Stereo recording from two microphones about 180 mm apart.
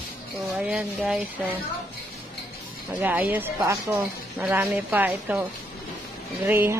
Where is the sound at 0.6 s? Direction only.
5° right (ahead or behind).